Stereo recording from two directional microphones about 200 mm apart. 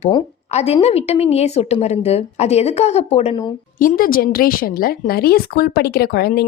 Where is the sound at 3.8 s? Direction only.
45° left (ahead or behind).